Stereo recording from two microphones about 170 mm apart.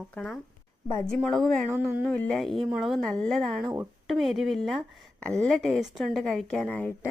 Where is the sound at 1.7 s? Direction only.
10° right (ahead or behind).